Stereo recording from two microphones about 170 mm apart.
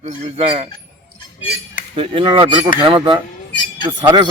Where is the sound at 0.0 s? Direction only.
40° right (ahead or behind).